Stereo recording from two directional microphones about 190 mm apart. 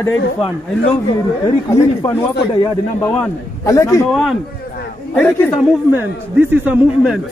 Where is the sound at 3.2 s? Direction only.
15° left (ahead or behind).